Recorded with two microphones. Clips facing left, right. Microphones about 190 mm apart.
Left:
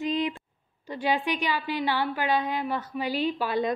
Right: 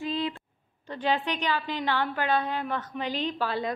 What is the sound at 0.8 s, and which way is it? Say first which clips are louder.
A woman's voice: left 1 dB; 10° left (ahead or behind).